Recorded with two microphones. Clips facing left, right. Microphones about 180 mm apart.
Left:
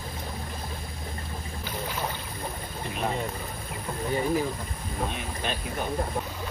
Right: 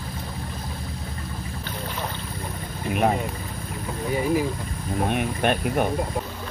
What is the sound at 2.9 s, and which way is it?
Vehicle, 60° right (ahead or behind).